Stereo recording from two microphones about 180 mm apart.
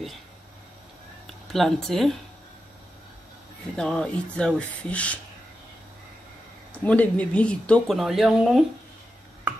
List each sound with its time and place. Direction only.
1.5 s speech: centre (ahead or behind)
3.7 s speech: 5° left (ahead or behind)
6.7 s speech: 10° left (ahead or behind)